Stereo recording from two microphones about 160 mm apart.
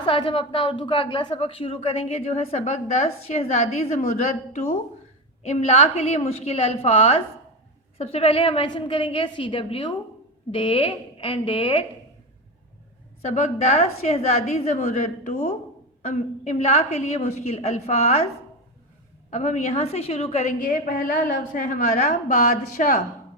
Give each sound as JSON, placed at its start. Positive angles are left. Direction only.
{"t": 0.0, "sound": "a woman's voice", "side_deg": 30}
{"t": 13.2, "sound": "a woman's voice", "side_deg": 45}
{"t": 19.3, "sound": "a woman's voice", "side_deg": 45}
{"t": 20.6, "sound": "a woman's voice", "side_deg": 60}